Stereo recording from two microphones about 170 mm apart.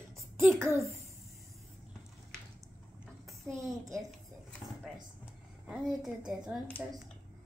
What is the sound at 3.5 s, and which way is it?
Speech, 20° right (ahead or behind).